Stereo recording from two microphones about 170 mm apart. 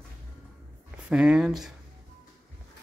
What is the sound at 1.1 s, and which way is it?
Speech, 5° right (ahead or behind).